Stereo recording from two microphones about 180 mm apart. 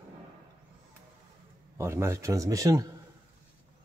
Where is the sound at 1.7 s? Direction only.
15° right (ahead or behind).